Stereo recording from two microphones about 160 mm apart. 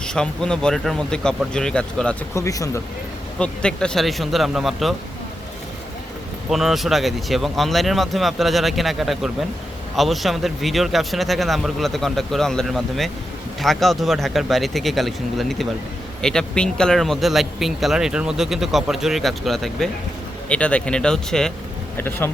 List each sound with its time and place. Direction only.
0.0 s speech: 5° left (ahead or behind)
2.3 s speech: 20° left (ahead or behind)
3.3 s speech: 5° left (ahead or behind)
6.5 s speech: centre (ahead or behind)
21.9 s speech: 15° left (ahead or behind)